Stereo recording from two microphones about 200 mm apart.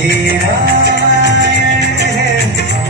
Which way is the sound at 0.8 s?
60° right (ahead or behind).